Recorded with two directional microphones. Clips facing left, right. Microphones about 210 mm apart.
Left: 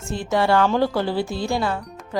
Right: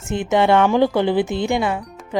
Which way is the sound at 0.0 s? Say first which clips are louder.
Right 4 dB; 20° right (ahead or behind).